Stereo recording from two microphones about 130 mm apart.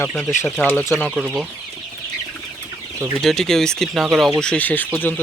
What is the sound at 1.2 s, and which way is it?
Speech, 5° right (ahead or behind).